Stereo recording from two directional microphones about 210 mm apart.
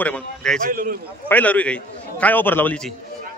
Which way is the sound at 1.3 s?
5° left (ahead or behind).